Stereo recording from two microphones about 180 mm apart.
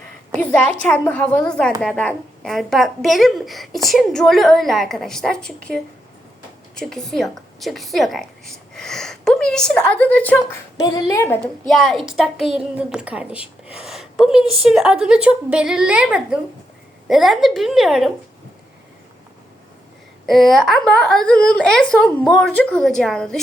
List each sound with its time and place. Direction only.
0.3 s a woman's voice: 10° left (ahead or behind)
10.8 s a woman's voice: 20° left (ahead or behind)
11.7 s a woman's voice: centre (ahead or behind)
20.2 s a woman's voice: centre (ahead or behind)